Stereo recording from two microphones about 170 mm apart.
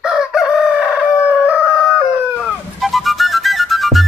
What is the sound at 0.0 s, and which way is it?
Chicken, 5° right (ahead or behind).